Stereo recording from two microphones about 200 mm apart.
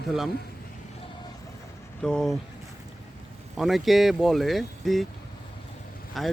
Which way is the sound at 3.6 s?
Centre (ahead or behind).